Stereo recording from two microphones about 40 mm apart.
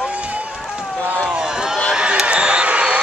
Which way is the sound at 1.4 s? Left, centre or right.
Centre.